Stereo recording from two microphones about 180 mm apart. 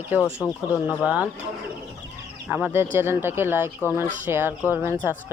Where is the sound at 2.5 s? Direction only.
10° right (ahead or behind).